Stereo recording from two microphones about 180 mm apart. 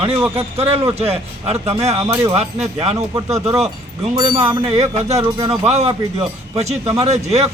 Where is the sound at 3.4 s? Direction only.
35° right (ahead or behind).